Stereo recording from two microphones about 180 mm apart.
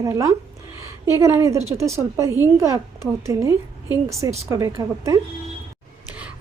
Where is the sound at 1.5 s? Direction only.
35° right (ahead or behind).